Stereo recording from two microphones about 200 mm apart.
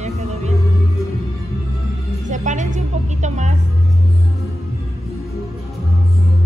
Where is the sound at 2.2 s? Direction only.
35° right (ahead or behind).